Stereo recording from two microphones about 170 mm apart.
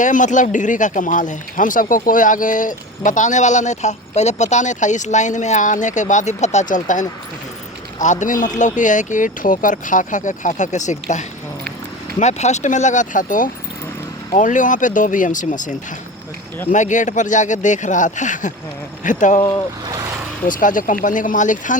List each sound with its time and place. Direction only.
0.0 s speech: 50° left (ahead or behind)
16.7 s speech: 45° left (ahead or behind)
20.5 s speech: 50° left (ahead or behind)